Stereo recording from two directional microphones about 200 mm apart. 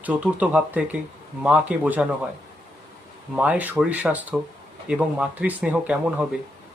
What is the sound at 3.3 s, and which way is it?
Speech, 5° right (ahead or behind).